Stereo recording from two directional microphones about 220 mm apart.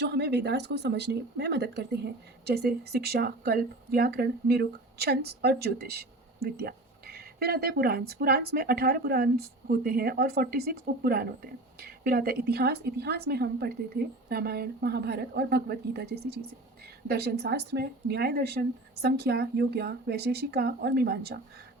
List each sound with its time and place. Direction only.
0.0 s speech: 50° right (ahead or behind)